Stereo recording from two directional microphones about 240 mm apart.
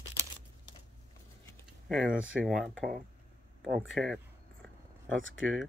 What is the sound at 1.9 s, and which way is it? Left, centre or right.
Speech, centre.